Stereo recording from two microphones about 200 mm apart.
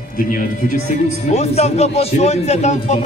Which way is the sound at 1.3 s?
35° left (ahead or behind).